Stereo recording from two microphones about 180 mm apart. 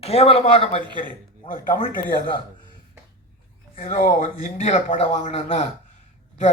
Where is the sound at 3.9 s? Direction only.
55° left (ahead or behind).